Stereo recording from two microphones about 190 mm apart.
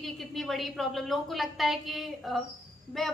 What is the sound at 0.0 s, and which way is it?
A woman's voice, centre (ahead or behind).